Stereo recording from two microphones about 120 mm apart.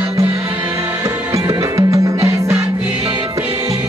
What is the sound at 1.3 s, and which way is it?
Music, 25° right (ahead or behind).